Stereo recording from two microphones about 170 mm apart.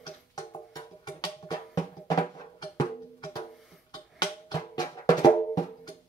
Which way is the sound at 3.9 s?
25° left (ahead or behind).